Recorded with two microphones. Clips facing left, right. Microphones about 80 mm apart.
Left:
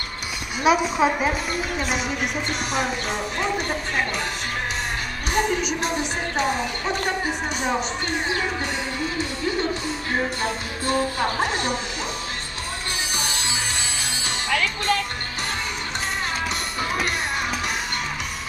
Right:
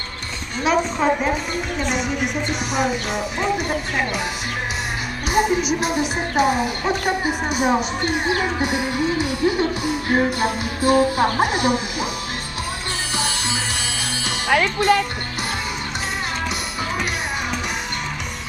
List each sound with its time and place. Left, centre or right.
0.7 s a woman's voice: centre
5.3 s speech: centre
8.4 s music: centre
14.5 s speech: right